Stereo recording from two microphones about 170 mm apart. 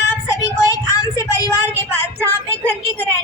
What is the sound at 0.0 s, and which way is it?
Child singing, 15° left (ahead or behind).